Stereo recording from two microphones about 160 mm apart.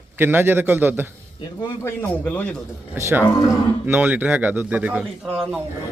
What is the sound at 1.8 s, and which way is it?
Speech, 10° left (ahead or behind).